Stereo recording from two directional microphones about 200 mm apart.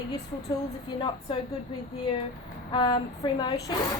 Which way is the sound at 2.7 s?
25° left (ahead or behind).